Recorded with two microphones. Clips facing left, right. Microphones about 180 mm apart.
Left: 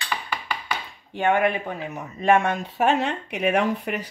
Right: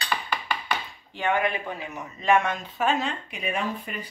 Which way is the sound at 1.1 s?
55° left (ahead or behind).